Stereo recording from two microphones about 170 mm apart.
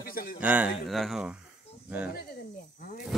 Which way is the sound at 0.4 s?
10° right (ahead or behind).